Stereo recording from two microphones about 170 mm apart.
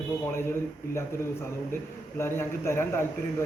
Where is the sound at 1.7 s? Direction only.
15° left (ahead or behind).